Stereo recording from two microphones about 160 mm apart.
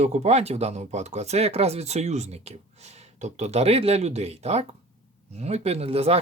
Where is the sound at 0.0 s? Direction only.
45° right (ahead or behind).